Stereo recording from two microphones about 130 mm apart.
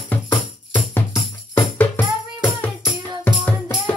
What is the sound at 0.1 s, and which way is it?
Music, 15° left (ahead or behind).